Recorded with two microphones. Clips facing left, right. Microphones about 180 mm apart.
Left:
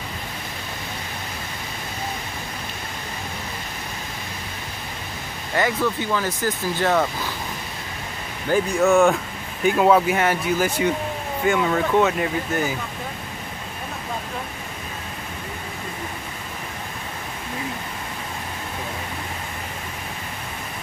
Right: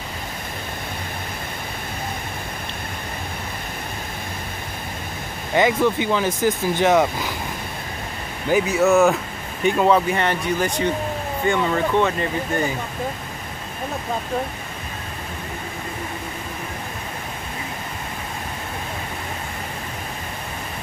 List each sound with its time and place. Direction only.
5.5 s speech: 20° right (ahead or behind)
8.5 s speech: 5° right (ahead or behind)